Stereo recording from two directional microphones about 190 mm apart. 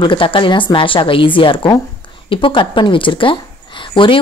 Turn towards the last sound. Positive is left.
turn(degrees=25)  # may be behind; listen again after turning